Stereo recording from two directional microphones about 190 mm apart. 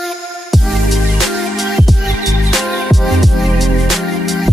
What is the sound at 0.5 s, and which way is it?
Music, centre (ahead or behind).